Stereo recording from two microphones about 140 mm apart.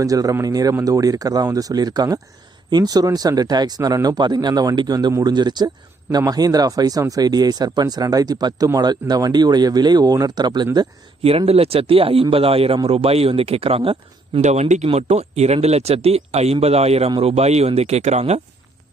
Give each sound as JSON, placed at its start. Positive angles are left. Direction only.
{"t": 0.0, "sound": "speech", "side_deg": -25}
{"t": 11.2, "sound": "speech", "side_deg": -45}
{"t": 14.4, "sound": "speech", "side_deg": -55}